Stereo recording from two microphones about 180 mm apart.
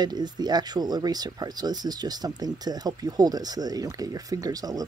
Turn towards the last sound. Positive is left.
turn(degrees=-20)  # may be behind; listen again after turning